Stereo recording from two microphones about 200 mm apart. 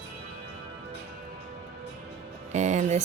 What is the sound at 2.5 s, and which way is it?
Music, 35° right (ahead or behind).